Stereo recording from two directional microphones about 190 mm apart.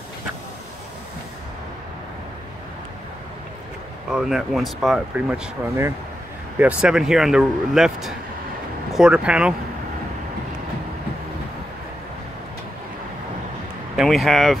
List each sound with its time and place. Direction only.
4.1 s speech: centre (ahead or behind)
13.9 s speech: centre (ahead or behind)